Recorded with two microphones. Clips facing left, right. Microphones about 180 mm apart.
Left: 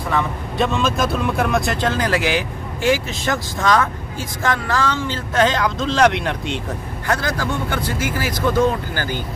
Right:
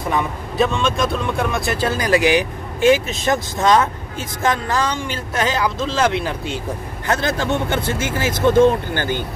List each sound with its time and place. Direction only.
0.1 s speech: 15° right (ahead or behind)
0.6 s speech: centre (ahead or behind)
7.1 s speech: 25° right (ahead or behind)